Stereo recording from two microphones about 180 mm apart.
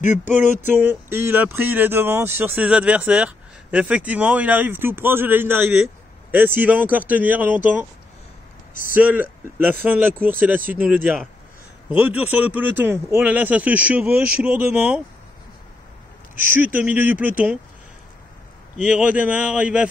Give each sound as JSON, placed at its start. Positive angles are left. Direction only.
{"t": 0.0, "sound": "a sound", "side_deg": 40}
{"t": 0.6, "sound": "speech", "side_deg": -10}
{"t": 8.9, "sound": "speech", "side_deg": -10}
{"t": 16.5, "sound": "speech", "side_deg": -10}
{"t": 18.8, "sound": "speech", "side_deg": -5}